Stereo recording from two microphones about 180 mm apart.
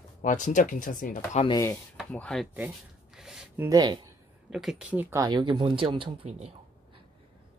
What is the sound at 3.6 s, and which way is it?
Speech, 20° right (ahead or behind).